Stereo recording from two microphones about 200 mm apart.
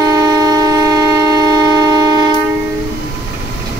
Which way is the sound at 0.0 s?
20° right (ahead or behind).